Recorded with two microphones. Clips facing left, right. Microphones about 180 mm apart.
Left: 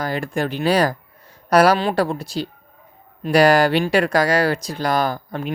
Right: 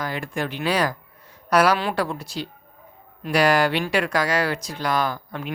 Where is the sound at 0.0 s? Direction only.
35° left (ahead or behind).